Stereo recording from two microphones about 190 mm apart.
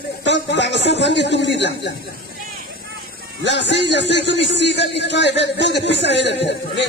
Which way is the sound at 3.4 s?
70° left (ahead or behind).